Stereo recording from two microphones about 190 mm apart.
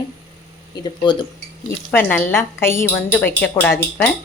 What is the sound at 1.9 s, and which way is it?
Speech, 5° left (ahead or behind).